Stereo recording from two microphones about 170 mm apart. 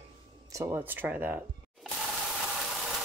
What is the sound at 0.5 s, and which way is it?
Speech, 15° right (ahead or behind).